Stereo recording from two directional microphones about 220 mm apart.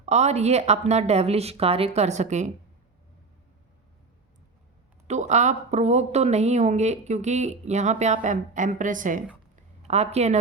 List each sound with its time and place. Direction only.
0.0 s speech: 30° right (ahead or behind)
5.0 s speech: 30° right (ahead or behind)